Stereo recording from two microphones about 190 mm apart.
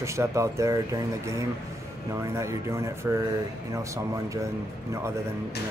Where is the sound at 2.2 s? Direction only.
15° right (ahead or behind).